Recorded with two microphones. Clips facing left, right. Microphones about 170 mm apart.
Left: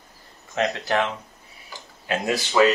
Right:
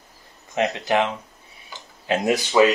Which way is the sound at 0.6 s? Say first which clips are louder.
Right 2 dB; 15° right (ahead or behind).